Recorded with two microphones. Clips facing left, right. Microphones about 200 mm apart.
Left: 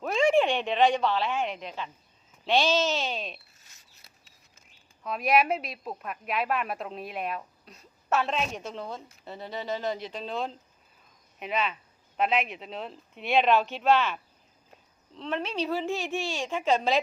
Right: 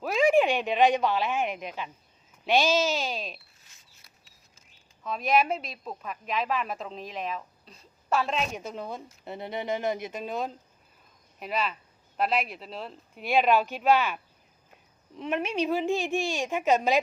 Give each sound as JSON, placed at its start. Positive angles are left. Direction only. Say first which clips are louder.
{"t": 0.0, "sound": "a sound", "louder": "right 1 dB", "side_deg": -5}
{"t": 0.3, "sound": "speech", "louder": "right 1 dB", "side_deg": -5}
{"t": 5.0, "sound": "speech", "louder": "left 1 dB", "side_deg": 5}
{"t": 9.2, "sound": "speech", "louder": "right 3 dB", "side_deg": -20}